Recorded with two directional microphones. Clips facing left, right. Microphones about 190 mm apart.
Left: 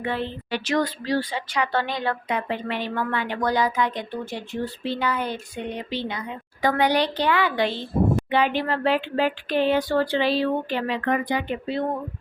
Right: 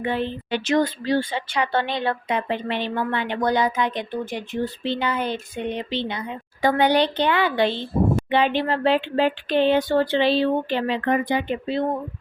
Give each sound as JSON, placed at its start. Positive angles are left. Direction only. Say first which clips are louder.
{"t": 0.0, "sound": "a woman's voice", "louder": "right 3 dB", "side_deg": -20}